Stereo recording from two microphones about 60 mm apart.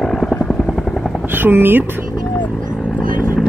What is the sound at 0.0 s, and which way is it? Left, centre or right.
Vehicle, centre.